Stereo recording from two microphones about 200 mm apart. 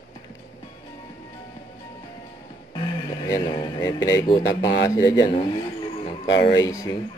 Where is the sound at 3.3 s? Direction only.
20° left (ahead or behind).